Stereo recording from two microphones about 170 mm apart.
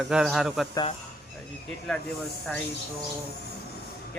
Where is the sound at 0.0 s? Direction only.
Centre (ahead or behind).